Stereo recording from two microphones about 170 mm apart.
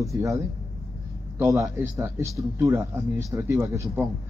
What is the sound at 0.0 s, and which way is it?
Speech, 20° right (ahead or behind).